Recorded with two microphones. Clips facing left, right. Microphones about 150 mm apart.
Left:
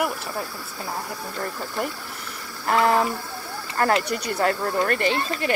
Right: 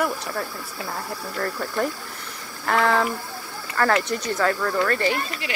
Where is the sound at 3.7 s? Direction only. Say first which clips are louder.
Even; 25° left (ahead or behind).